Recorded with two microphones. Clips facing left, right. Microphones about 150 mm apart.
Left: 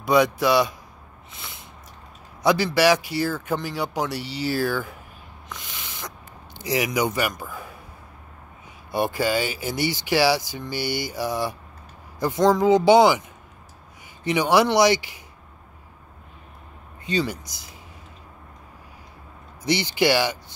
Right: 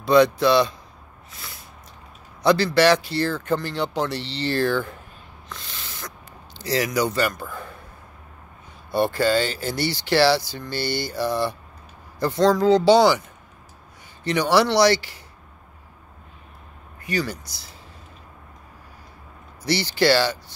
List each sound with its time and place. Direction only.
0.0 s speech: 10° left (ahead or behind)
1.3 s a sound: 20° left (ahead or behind)
2.4 s speech: 10° left (ahead or behind)
8.9 s speech: 10° left (ahead or behind)
14.2 s speech: 15° left (ahead or behind)
17.0 s speech: 25° left (ahead or behind)
19.6 s speech: 15° left (ahead or behind)